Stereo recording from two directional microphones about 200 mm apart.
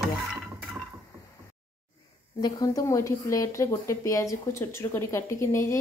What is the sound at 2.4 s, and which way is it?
Speech, 15° left (ahead or behind).